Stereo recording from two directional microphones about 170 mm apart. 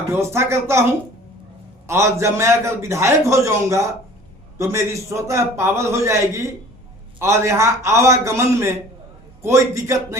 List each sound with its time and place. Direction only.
0.1 s a man's voice: 15° right (ahead or behind)